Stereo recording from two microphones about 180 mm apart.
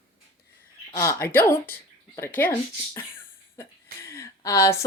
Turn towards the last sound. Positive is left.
turn(degrees=15)  # may be behind; listen again after turning